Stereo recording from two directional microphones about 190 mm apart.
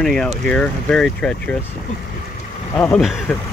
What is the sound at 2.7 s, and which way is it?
Speech, 5° left (ahead or behind).